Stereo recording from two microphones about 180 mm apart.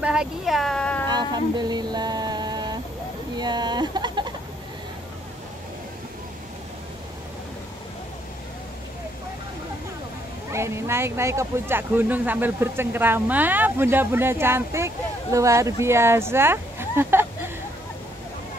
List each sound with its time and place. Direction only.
0.0 s speech: 5° right (ahead or behind)
1.0 s a sound: 25° right (ahead or behind)
3.3 s speech: 25° right (ahead or behind)
10.5 s speech: 15° right (ahead or behind)